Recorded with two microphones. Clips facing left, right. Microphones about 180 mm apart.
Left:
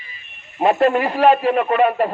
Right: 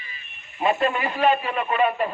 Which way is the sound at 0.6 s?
65° left (ahead or behind).